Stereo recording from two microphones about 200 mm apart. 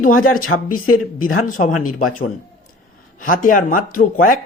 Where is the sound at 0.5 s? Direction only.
70° left (ahead or behind).